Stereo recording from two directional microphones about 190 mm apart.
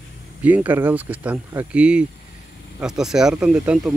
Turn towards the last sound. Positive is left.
turn(degrees=-5)  # may be behind; listen again after turning